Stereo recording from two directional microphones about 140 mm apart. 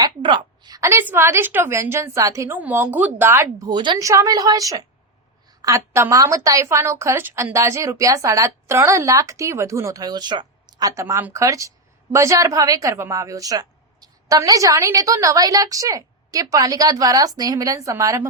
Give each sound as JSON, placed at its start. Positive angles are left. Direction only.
{"t": 0.0, "sound": "a woman's voice", "side_deg": -35}
{"t": 3.7, "sound": "a woman's voice", "side_deg": -30}
{"t": 11.0, "sound": "a woman's voice", "side_deg": -15}